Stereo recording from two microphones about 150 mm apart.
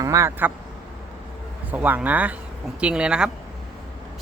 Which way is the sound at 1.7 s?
10° right (ahead or behind).